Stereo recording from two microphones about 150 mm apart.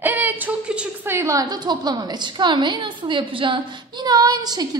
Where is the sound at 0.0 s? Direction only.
10° right (ahead or behind).